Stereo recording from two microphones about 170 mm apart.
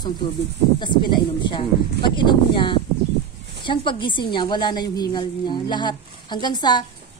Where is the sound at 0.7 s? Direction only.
25° left (ahead or behind).